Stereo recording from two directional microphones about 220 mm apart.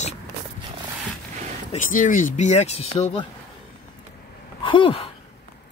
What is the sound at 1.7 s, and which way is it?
Speech, 35° left (ahead or behind).